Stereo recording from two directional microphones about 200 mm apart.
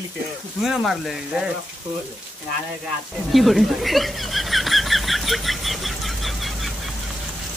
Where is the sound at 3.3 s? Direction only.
Centre (ahead or behind).